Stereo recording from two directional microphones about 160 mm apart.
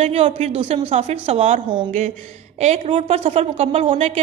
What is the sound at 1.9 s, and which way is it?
A woman's voice, 50° right (ahead or behind).